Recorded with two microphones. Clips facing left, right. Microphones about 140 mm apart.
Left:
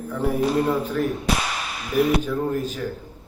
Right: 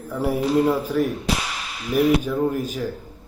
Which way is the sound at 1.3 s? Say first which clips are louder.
Left 2 dB; 55° left (ahead or behind).